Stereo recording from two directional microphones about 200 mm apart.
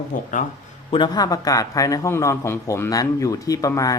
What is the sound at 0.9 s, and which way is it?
A man's voice, 20° left (ahead or behind).